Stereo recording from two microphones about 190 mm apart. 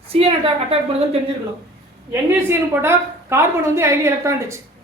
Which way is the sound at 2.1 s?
10° right (ahead or behind).